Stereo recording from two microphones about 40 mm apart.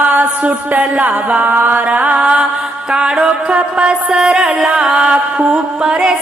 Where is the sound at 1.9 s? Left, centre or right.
Right.